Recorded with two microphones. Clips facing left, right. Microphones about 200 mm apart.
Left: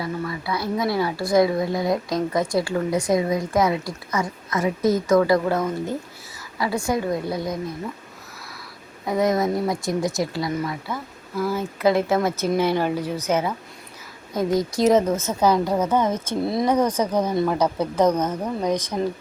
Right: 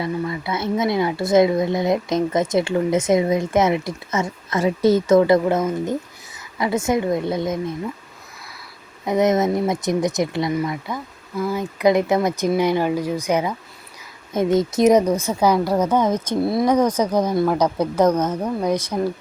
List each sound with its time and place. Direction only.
0.0 s speech: 25° right (ahead or behind)
9.0 s a woman's voice: 20° right (ahead or behind)